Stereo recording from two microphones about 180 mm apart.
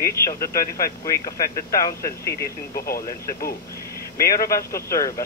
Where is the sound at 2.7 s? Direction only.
55° left (ahead or behind).